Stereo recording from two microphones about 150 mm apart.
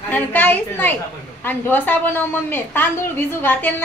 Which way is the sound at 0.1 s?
10° left (ahead or behind).